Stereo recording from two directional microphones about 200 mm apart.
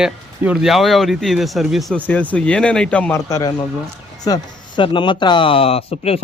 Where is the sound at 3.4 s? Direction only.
20° left (ahead or behind).